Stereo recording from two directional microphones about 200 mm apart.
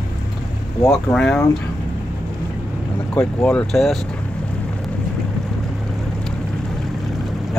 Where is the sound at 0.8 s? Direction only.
5° left (ahead or behind).